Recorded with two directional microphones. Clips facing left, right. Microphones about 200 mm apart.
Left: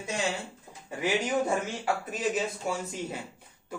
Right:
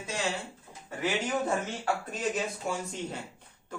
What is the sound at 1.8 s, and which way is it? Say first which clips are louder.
Speech: left 1 dB; 5° left (ahead or behind).